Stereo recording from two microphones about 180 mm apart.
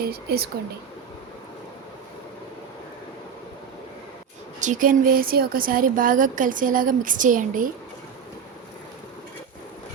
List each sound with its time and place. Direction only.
0.0 s speech: 60° right (ahead or behind)
4.6 s a woman's voice: 45° right (ahead or behind)